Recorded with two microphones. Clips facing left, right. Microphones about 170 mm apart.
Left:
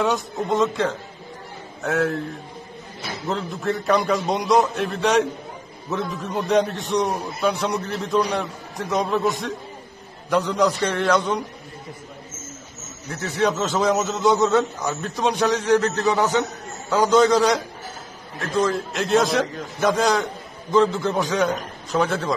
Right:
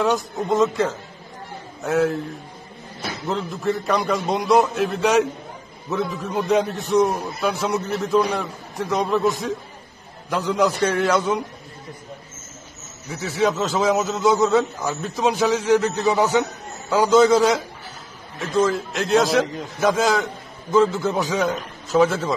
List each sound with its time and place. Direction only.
0.0 s a man's voice: centre (ahead or behind)
3.3 s a man's voice: centre (ahead or behind)
13.1 s a man's voice: centre (ahead or behind)
19.4 s a man's voice: 20° right (ahead or behind)
19.8 s a man's voice: centre (ahead or behind)